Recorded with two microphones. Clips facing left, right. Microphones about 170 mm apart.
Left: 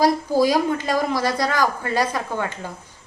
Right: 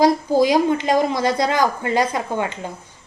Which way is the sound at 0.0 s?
20° right (ahead or behind).